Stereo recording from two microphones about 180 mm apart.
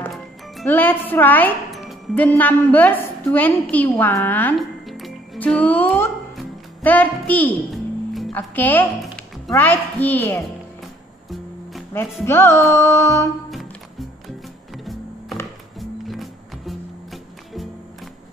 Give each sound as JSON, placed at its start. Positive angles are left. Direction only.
{"t": 0.0, "sound": "music", "side_deg": 5}
{"t": 2.2, "sound": "a woman's voice", "side_deg": 10}
{"t": 6.3, "sound": "music", "side_deg": 10}
{"t": 9.5, "sound": "speech", "side_deg": 10}
{"t": 11.9, "sound": "speech", "side_deg": 15}
{"t": 13.5, "sound": "music", "side_deg": 0}
{"t": 16.1, "sound": "music", "side_deg": 0}